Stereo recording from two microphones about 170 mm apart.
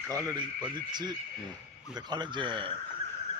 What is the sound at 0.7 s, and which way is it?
Speech, 25° right (ahead or behind).